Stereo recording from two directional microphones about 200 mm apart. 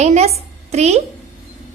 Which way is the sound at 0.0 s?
35° right (ahead or behind).